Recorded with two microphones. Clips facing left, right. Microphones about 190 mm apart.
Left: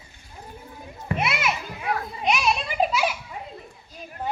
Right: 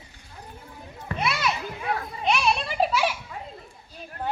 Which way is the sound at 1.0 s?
20° left (ahead or behind).